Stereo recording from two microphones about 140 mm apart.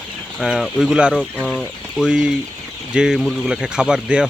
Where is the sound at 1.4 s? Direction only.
5° left (ahead or behind).